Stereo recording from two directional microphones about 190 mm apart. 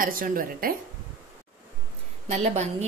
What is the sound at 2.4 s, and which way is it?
Speech, 35° right (ahead or behind).